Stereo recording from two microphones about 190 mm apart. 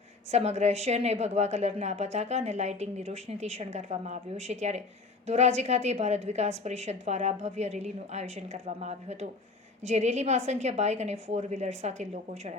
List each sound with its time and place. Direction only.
0.3 s a woman's voice: 35° right (ahead or behind)